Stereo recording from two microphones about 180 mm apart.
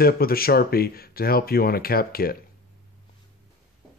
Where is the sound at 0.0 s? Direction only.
55° left (ahead or behind).